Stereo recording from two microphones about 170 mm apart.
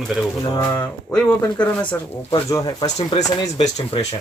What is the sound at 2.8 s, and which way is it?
Speech, 40° left (ahead or behind).